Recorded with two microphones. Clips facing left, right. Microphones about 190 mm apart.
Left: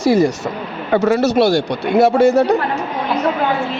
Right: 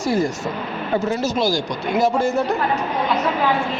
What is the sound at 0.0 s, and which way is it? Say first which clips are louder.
Speech: left 6 dB; 75° left (ahead or behind).